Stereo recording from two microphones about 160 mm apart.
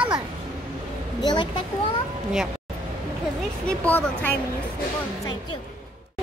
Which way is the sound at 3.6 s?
10° left (ahead or behind).